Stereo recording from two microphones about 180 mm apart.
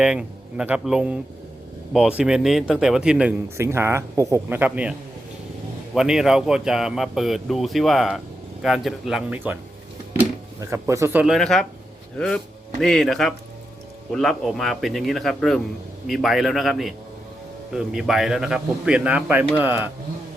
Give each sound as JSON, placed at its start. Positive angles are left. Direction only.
{"t": 0.0, "sound": "speech", "side_deg": -5}
{"t": 11.3, "sound": "a man's voice", "side_deg": 0}